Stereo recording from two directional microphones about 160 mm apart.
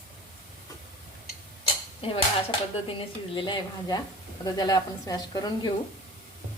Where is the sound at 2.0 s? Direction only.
35° left (ahead or behind).